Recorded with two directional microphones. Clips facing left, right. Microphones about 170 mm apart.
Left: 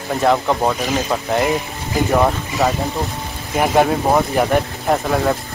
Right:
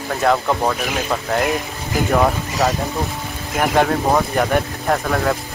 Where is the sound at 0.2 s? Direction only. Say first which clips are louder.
Left 1 dB; 5° left (ahead or behind).